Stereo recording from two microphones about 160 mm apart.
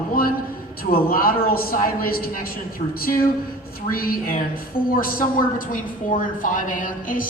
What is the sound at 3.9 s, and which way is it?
A woman's voice, 65° left (ahead or behind).